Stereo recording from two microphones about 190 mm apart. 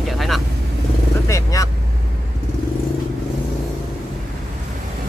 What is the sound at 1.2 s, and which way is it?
Vehicle, 15° left (ahead or behind).